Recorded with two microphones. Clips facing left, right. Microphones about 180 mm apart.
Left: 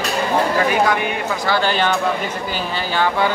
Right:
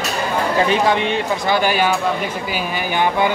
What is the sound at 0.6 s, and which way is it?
Speech, 25° right (ahead or behind).